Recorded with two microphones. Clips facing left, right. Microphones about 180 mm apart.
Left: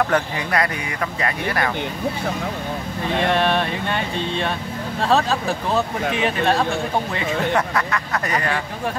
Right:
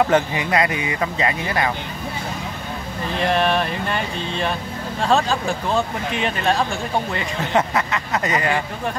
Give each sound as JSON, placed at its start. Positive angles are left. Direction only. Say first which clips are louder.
{"t": 0.0, "sound": "speech", "louder": "right 3 dB", "side_deg": -20}
{"t": 3.2, "sound": "speech", "louder": "even", "side_deg": 0}
{"t": 7.5, "sound": "speech", "louder": "right 1 dB", "side_deg": -20}